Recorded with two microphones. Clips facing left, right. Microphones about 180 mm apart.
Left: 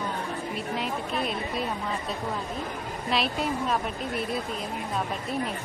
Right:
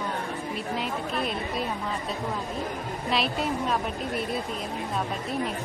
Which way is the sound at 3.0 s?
Centre (ahead or behind).